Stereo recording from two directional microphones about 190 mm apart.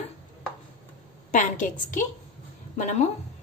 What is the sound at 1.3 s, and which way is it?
A woman's voice, 40° left (ahead or behind).